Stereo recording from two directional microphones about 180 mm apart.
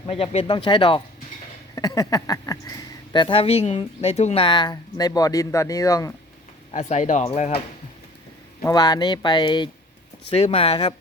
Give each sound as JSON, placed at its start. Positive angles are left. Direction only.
{"t": 0.1, "sound": "speech", "side_deg": 35}
{"t": 6.7, "sound": "speech", "side_deg": 40}
{"t": 8.6, "sound": "speech", "side_deg": 20}